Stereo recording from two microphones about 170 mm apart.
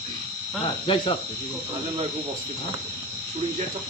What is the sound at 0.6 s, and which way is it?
Speech, 30° left (ahead or behind).